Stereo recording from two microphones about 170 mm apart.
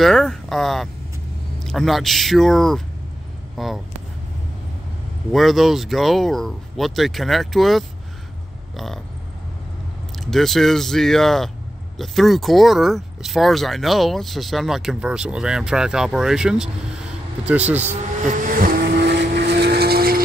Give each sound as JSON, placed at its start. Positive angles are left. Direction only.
{"t": 0.0, "sound": "speech", "side_deg": 0}
{"t": 5.3, "sound": "speech", "side_deg": 0}
{"t": 10.1, "sound": "speech", "side_deg": 0}
{"t": 18.3, "sound": "vehicle", "side_deg": -55}